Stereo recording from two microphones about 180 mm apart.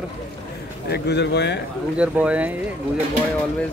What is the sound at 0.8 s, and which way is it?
Speech, 65° left (ahead or behind).